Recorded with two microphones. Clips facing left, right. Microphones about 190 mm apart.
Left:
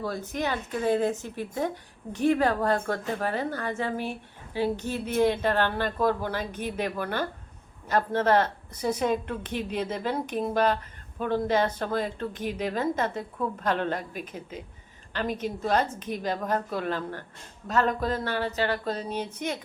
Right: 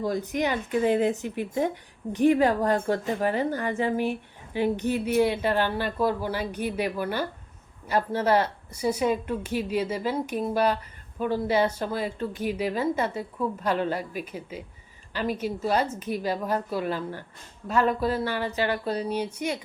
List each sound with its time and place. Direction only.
0.0 s speech: 15° right (ahead or behind)